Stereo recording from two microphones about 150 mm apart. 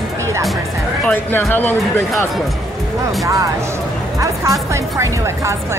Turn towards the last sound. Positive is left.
turn(degrees=-20)  # may be behind; listen again after turning